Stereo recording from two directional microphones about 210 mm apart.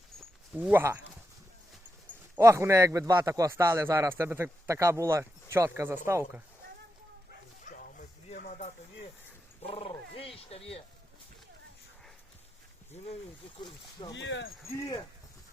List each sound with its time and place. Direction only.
0.5 s a man's voice: 10° right (ahead or behind)
2.3 s a man's voice: 10° right (ahead or behind)
7.7 s bow-wow: 40° left (ahead or behind)
9.6 s speech: 25° left (ahead or behind)
13.6 s speech: 20° left (ahead or behind)
14.1 s speech: 60° left (ahead or behind)